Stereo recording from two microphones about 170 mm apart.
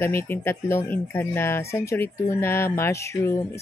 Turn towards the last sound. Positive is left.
turn(degrees=15)  # may be behind; listen again after turning